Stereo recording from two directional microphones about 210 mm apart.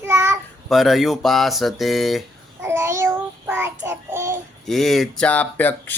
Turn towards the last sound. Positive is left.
turn(degrees=10)  # may be behind; listen again after turning